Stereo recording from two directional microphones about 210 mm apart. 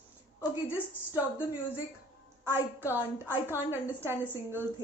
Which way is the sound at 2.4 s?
10° right (ahead or behind).